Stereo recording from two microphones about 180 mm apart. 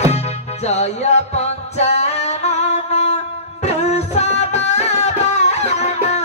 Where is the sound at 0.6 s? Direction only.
35° left (ahead or behind).